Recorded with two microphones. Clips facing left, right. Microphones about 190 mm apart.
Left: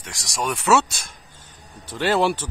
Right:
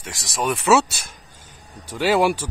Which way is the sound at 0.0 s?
Centre (ahead or behind).